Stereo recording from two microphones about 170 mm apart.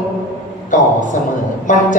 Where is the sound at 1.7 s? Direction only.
50° left (ahead or behind).